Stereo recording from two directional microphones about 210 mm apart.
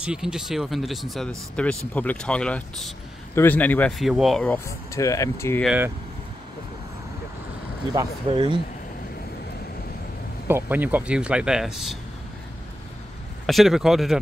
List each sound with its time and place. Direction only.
0.0 s speech: 5° right (ahead or behind)
4.6 s speech: 15° left (ahead or behind)
5.6 s speech: 5° right (ahead or behind)
7.9 s speech: 20° right (ahead or behind)
10.5 s speech: 10° right (ahead or behind)
13.5 s speech: centre (ahead or behind)